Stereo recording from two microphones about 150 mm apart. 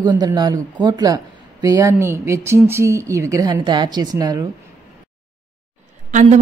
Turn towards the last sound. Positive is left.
turn(degrees=-55)  # may be behind; listen again after turning